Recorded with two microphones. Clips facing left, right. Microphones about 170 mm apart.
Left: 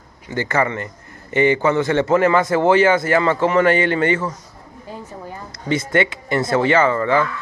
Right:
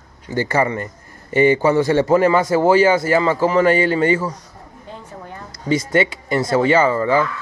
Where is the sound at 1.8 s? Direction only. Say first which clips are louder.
Right 2 dB; 15° right (ahead or behind).